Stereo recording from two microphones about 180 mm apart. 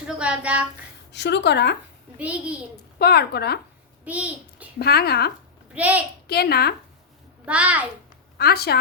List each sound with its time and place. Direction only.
0.2 s a woman's voice: 5° right (ahead or behind)
1.1 s speech: 70° left (ahead or behind)
2.1 s a woman's voice: 5° right (ahead or behind)
3.0 s speech: 60° left (ahead or behind)
4.0 s a child's voice: 10° right (ahead or behind)
4.8 s speech: 60° left (ahead or behind)
5.7 s a child's voice: 10° right (ahead or behind)
6.2 s speech: 60° left (ahead or behind)
7.4 s a woman's voice: 5° right (ahead or behind)
8.4 s speech: 60° left (ahead or behind)